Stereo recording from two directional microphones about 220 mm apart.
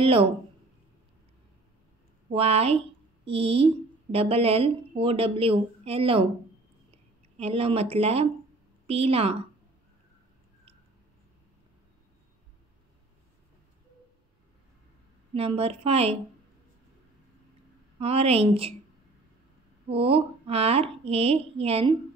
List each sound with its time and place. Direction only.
0.0 s speech: 25° right (ahead or behind)
2.2 s speech: 25° right (ahead or behind)
7.3 s speech: 25° right (ahead or behind)
15.3 s speech: 25° right (ahead or behind)
17.9 s speech: 25° right (ahead or behind)
19.9 s speech: 25° right (ahead or behind)